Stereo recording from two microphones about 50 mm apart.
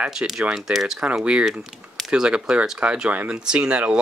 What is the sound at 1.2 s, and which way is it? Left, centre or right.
Speech, right.